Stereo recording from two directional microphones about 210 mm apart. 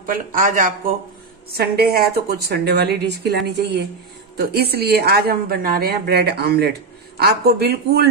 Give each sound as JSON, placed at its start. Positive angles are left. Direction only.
{"t": 0.0, "sound": "a woman's voice", "side_deg": -40}